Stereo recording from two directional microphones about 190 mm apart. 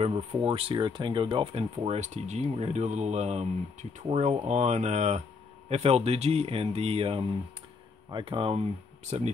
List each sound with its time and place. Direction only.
0.0 s speech: 30° right (ahead or behind)